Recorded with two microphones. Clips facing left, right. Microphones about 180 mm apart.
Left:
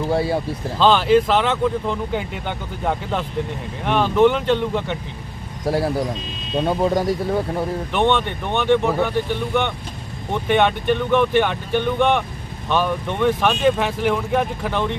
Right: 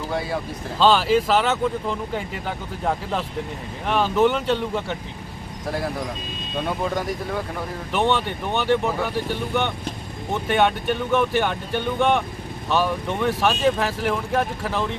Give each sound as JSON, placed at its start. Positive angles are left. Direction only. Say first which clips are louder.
{"t": 0.1, "sound": "speech", "louder": "left 5 dB", "side_deg": 30}
{"t": 0.8, "sound": "speech", "louder": "left 3 dB", "side_deg": 0}
{"t": 5.6, "sound": "speech", "louder": "left 6 dB", "side_deg": 30}
{"t": 7.9, "sound": "speech", "louder": "left 2 dB", "side_deg": -5}